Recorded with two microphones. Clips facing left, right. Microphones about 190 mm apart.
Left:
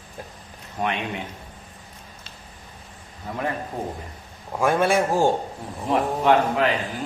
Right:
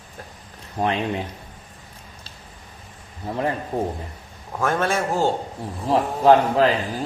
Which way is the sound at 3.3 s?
30° right (ahead or behind).